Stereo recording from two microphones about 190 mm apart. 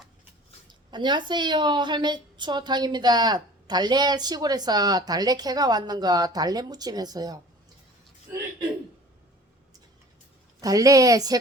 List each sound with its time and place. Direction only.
0.7 s a woman's voice: 25° right (ahead or behind)
10.6 s a woman's voice: 20° right (ahead or behind)